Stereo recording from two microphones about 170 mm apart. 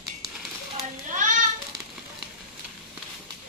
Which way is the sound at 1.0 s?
50° right (ahead or behind).